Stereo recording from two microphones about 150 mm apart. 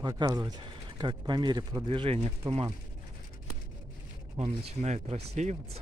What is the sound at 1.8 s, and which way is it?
Speech, 40° right (ahead or behind).